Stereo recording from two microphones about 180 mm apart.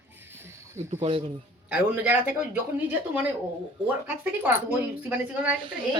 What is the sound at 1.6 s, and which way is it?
Speech, 5° right (ahead or behind).